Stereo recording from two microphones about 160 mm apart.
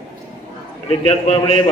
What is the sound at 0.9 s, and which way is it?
Speech, 40° left (ahead or behind).